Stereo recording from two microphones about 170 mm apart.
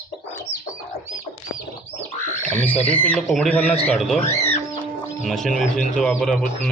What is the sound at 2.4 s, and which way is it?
Speech, 10° left (ahead or behind).